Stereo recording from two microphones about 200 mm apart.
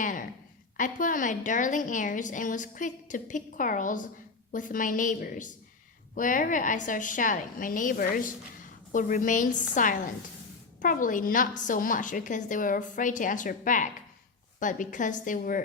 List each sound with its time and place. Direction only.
0.0 s a woman's voice: 40° left (ahead or behind)